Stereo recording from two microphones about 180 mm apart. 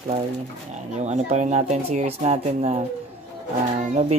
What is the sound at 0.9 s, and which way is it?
Speech, 40° right (ahead or behind).